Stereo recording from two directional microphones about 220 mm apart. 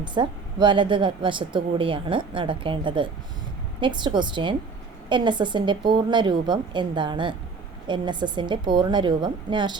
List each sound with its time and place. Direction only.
0.0 s speech: 20° right (ahead or behind)